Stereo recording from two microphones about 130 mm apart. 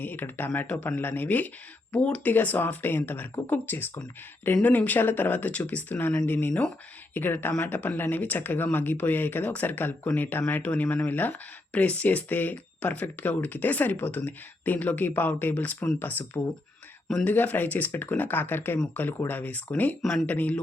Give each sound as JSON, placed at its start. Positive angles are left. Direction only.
{"t": 0.0, "sound": "speech", "side_deg": 15}
{"t": 17.1, "sound": "speech", "side_deg": 5}